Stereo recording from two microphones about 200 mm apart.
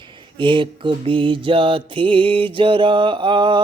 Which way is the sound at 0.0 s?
25° right (ahead or behind).